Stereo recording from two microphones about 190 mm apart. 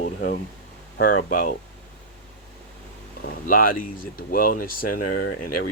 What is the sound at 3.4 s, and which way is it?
Speech, 50° left (ahead or behind).